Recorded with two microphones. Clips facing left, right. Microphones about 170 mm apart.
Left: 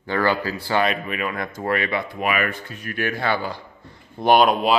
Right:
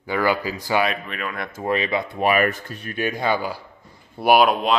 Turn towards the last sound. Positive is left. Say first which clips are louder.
# even
turn(degrees=0)  # may be behind; listen again after turning